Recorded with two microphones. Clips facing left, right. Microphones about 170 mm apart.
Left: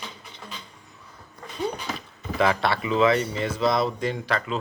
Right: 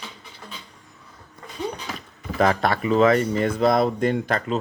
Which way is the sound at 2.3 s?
40° right (ahead or behind).